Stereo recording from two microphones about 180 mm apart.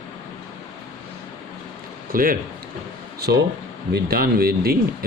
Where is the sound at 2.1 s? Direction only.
50° right (ahead or behind).